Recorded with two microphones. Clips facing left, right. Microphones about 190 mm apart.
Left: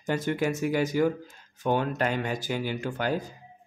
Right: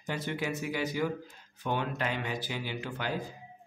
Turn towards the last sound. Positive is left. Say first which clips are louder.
# left 6 dB
turn(degrees=45)  # may be behind; listen again after turning